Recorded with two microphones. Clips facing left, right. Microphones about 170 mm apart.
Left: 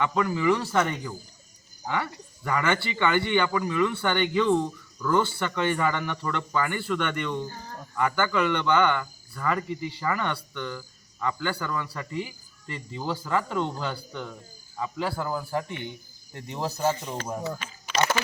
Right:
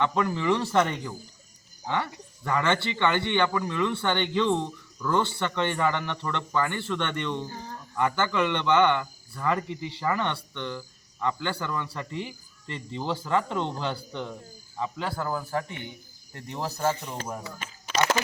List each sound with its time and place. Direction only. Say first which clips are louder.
0.0 s speech: left 1 dB; 5° left (ahead or behind)
2.5 s speech: even; 10° left (ahead or behind)
10.3 s speech: even; 25° right (ahead or behind)
11.2 s speech: even; 5° left (ahead or behind)
13.9 s speech: right 2 dB; 25° right (ahead or behind)
14.9 s speech: left 3 dB; 10° left (ahead or behind)